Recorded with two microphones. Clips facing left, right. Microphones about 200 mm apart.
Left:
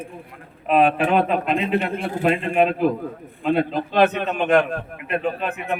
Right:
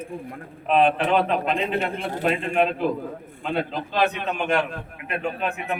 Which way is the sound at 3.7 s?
50° left (ahead or behind).